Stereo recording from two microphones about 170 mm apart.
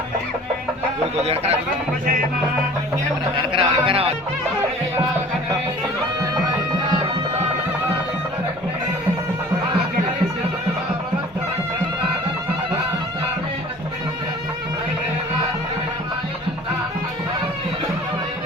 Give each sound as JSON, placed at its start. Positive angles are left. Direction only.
{"t": 1.2, "sound": "speech", "side_deg": -35}
{"t": 3.5, "sound": "music", "side_deg": -30}